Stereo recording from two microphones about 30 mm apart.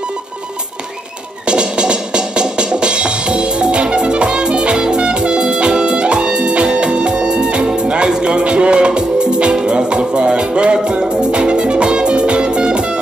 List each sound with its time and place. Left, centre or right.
1.5 s music: right